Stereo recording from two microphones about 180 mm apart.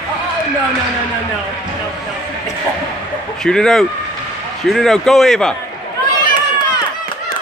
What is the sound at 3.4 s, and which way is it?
Speech, 5° left (ahead or behind).